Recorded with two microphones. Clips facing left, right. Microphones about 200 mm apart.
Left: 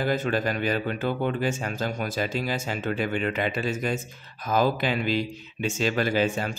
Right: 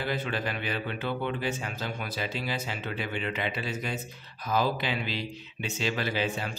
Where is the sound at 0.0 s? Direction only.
45° left (ahead or behind).